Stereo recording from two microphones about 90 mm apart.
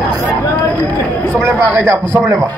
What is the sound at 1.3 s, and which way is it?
Speech, 30° right (ahead or behind).